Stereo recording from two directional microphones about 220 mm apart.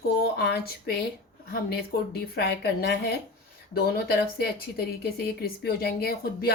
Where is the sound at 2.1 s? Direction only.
45° left (ahead or behind).